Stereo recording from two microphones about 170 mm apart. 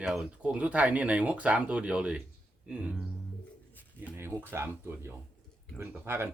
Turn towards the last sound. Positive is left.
turn(degrees=-15)  # may be behind; listen again after turning